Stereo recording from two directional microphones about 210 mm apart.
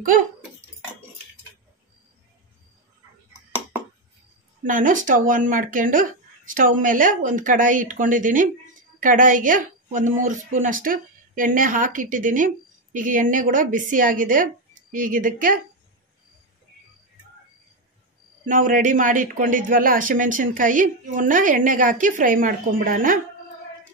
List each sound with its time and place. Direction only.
4.6 s speech: 40° right (ahead or behind)
18.4 s speech: 40° right (ahead or behind)